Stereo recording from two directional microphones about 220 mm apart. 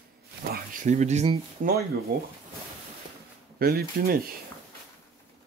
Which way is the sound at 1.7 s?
45° right (ahead or behind).